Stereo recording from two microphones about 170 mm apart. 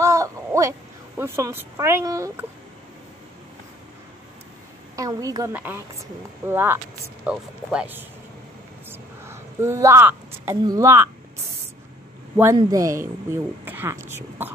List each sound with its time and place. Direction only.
0.0 s a woman's voice: 20° right (ahead or behind)
4.9 s a woman's voice: 20° right (ahead or behind)
8.8 s a sound: 15° right (ahead or behind)
12.5 s speech: 20° right (ahead or behind)